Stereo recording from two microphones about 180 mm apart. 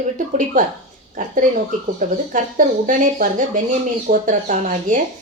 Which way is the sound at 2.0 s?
45° right (ahead or behind).